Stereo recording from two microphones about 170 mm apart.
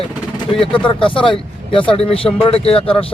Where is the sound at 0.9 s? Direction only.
30° left (ahead or behind).